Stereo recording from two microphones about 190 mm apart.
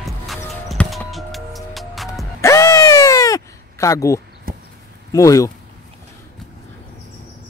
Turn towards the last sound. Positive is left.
turn(degrees=15)  # may be behind; listen again after turning